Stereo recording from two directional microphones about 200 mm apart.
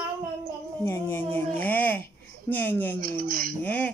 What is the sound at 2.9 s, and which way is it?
Speech, 45° right (ahead or behind).